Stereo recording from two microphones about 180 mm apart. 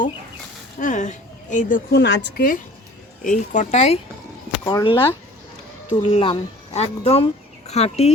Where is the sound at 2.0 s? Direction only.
75° left (ahead or behind).